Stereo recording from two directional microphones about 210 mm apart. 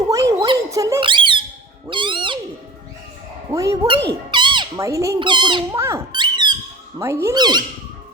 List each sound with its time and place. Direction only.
0.1 s a sound: 15° right (ahead or behind)
1.9 s owl: 25° right (ahead or behind)
3.5 s speech: 15° right (ahead or behind)